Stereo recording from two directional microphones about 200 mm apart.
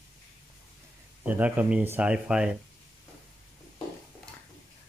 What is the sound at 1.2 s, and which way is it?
Speech, 5° right (ahead or behind).